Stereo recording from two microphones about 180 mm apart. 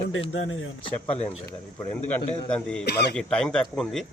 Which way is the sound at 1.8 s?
10° left (ahead or behind).